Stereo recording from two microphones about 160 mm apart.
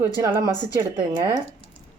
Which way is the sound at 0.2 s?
20° right (ahead or behind).